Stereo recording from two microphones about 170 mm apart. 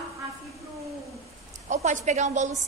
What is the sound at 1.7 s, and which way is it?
Speech, 45° right (ahead or behind).